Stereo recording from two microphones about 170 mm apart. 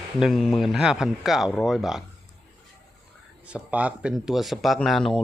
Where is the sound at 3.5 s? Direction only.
10° right (ahead or behind).